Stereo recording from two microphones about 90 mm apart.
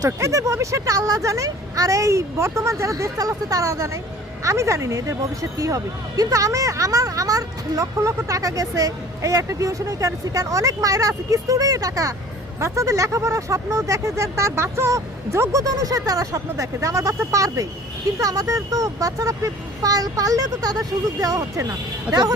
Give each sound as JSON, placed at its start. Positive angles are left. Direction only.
{"t": 0.0, "sound": "speech", "side_deg": -35}